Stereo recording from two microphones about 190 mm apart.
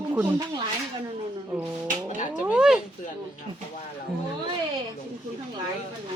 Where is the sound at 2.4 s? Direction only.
5° right (ahead or behind).